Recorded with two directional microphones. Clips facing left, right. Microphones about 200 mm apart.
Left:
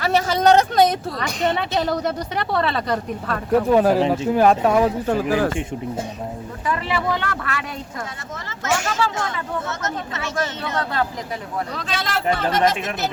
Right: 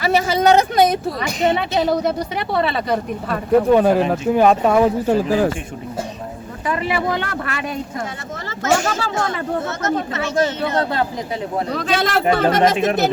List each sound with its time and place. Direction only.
0.0 s a woman's voice: 5° right (ahead or behind)
5.0 s speech: 15° right (ahead or behind)
6.7 s speech: 15° right (ahead or behind)
8.4 s speech: 35° right (ahead or behind)
11.7 s speech: 45° right (ahead or behind)